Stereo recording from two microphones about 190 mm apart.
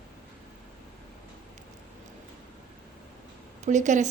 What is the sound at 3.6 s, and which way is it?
Speech, 40° right (ahead or behind).